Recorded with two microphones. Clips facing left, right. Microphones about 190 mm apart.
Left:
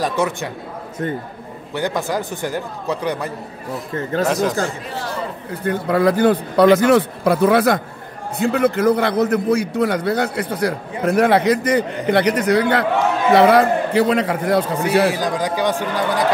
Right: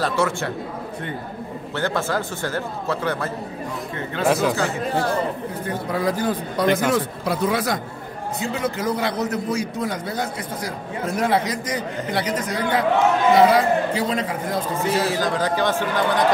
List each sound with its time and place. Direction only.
0.0 s a man's voice: 15° left (ahead or behind)
1.8 s a man's voice: 15° left (ahead or behind)
3.9 s speech: 40° left (ahead or behind)
4.3 s speech: centre (ahead or behind)
5.7 s a man's voice: 65° left (ahead or behind)
14.8 s a man's voice: 15° left (ahead or behind)